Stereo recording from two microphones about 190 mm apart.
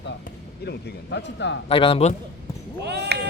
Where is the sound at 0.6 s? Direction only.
60° left (ahead or behind).